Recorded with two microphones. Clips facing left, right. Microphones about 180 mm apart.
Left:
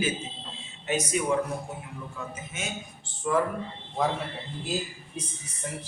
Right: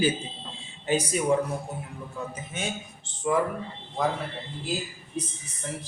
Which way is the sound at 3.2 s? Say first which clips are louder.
Right 1 dB; 15° right (ahead or behind).